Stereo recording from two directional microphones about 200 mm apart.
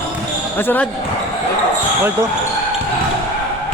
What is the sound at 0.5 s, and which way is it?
Speech, 10° left (ahead or behind).